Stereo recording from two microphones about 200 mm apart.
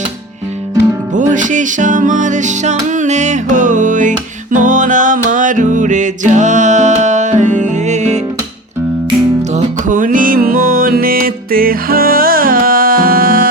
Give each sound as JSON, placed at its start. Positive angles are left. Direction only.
{"t": 1.1, "sound": "music", "side_deg": -40}
{"t": 9.5, "sound": "music", "side_deg": -35}